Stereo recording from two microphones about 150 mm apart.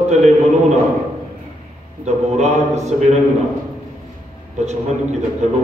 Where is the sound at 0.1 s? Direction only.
50° right (ahead or behind).